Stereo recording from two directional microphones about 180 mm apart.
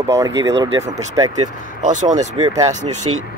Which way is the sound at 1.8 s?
45° right (ahead or behind).